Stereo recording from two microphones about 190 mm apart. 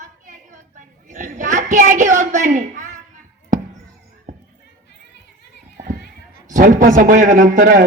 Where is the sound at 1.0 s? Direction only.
40° right (ahead or behind).